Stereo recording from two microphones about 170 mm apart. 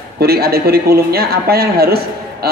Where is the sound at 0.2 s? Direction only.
65° right (ahead or behind).